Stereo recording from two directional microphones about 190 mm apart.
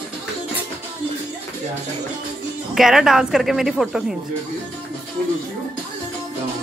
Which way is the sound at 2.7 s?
Centre (ahead or behind).